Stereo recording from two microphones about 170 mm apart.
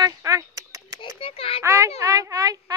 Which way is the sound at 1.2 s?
35° left (ahead or behind).